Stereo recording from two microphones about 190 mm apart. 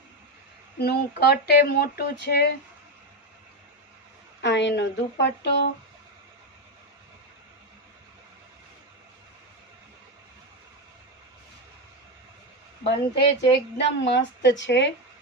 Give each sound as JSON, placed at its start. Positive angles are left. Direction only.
{"t": 0.8, "sound": "speech", "side_deg": 55}
{"t": 4.4, "sound": "speech", "side_deg": 70}
{"t": 13.1, "sound": "a woman's voice", "side_deg": 65}